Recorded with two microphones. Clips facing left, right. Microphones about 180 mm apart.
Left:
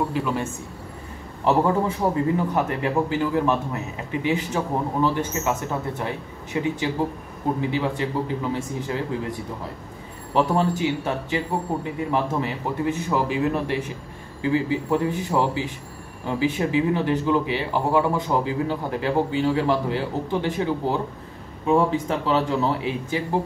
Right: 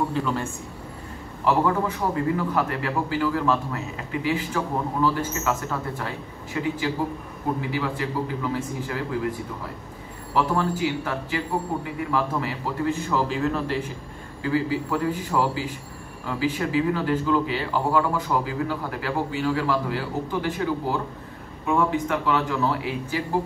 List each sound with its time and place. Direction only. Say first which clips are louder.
0.1 s a man's voice: left 1 dB; 15° left (ahead or behind)
10.3 s a man's voice: left 2 dB; 25° left (ahead or behind)